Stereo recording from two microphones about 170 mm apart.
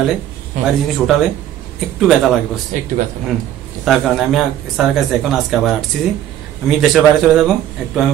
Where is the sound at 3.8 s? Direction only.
Centre (ahead or behind).